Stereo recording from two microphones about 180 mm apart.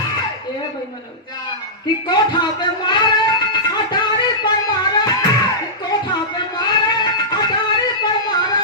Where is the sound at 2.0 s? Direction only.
25° left (ahead or behind).